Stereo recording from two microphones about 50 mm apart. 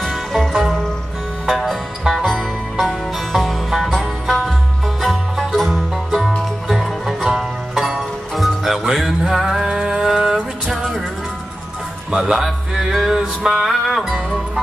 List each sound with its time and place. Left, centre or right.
0.0 s music: centre
12.2 s music: centre
13.7 s music: centre